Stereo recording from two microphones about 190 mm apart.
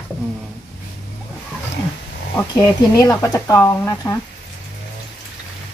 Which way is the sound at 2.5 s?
15° left (ahead or behind).